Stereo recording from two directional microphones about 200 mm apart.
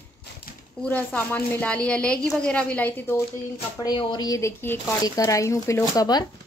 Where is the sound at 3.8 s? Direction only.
20° left (ahead or behind).